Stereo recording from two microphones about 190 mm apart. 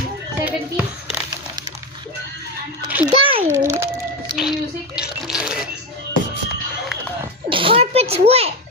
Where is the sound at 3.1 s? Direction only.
30° right (ahead or behind).